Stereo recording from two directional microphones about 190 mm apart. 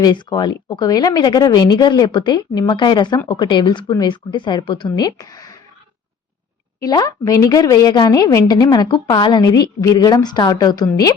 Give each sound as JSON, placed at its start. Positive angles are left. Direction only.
{"t": 0.0, "sound": "speech", "side_deg": 20}
{"t": 6.7, "sound": "speech", "side_deg": 20}